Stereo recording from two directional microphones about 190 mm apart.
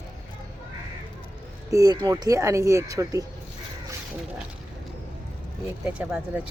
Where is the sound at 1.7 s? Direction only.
20° right (ahead or behind).